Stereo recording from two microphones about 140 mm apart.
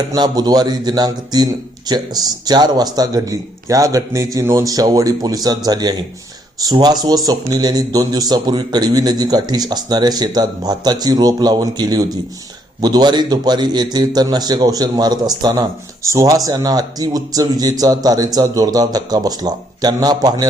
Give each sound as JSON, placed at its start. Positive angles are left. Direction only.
{"t": 0.1, "sound": "a man's voice", "side_deg": -30}